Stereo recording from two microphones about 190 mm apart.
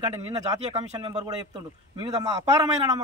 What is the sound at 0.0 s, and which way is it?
A man's voice, 20° right (ahead or behind).